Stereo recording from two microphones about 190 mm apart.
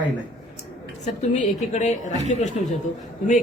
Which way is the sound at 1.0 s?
40° left (ahead or behind).